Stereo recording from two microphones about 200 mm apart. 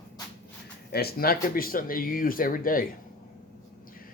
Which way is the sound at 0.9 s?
50° left (ahead or behind).